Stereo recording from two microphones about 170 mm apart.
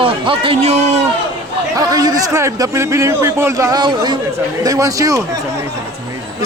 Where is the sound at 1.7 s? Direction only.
20° right (ahead or behind).